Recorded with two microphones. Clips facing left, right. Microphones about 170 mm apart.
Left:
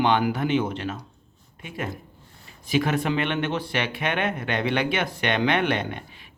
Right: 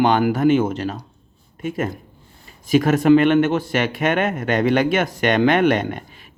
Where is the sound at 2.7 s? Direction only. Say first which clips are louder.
Right 10 dB; 45° right (ahead or behind).